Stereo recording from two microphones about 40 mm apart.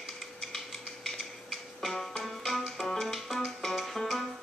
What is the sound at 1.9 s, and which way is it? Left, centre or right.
Music, centre.